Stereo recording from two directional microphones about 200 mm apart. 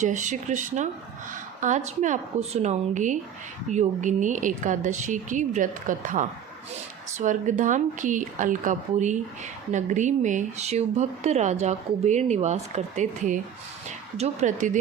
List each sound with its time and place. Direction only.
0.0 s a woman's voice: 35° right (ahead or behind)